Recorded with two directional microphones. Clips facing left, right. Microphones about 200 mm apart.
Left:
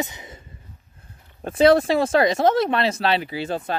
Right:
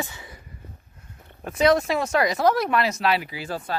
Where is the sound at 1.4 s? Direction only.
30° left (ahead or behind).